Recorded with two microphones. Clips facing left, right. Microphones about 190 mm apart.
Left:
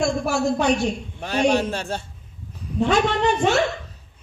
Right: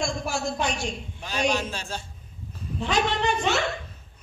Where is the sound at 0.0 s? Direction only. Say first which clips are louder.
Left 7 dB; 60° left (ahead or behind).